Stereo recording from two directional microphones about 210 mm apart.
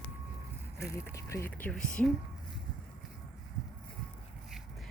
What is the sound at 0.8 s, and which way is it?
Speech, 15° left (ahead or behind).